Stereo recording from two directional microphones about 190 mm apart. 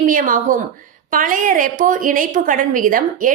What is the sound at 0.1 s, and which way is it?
A woman's voice, 45° right (ahead or behind).